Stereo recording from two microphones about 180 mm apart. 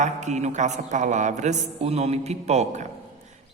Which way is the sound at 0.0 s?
40° right (ahead or behind).